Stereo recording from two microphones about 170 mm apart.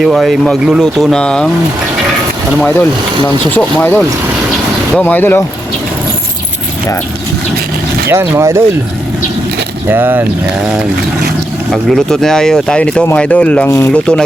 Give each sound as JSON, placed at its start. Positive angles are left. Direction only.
{"t": 0.0, "sound": "speech", "side_deg": 0}
{"t": 3.5, "sound": "speech", "side_deg": 10}
{"t": 8.1, "sound": "speech", "side_deg": -15}
{"t": 9.9, "sound": "speech", "side_deg": -10}
{"t": 11.7, "sound": "speech", "side_deg": 0}